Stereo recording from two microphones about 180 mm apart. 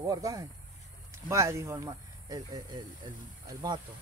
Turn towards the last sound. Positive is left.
turn(degrees=-20)  # may be behind; listen again after turning